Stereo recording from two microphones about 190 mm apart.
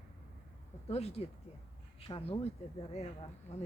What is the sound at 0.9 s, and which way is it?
Speech, 35° left (ahead or behind).